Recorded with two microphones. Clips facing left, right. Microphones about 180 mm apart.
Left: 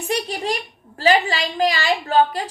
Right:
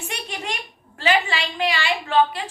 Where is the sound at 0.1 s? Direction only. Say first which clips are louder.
Left 10 dB; 35° left (ahead or behind).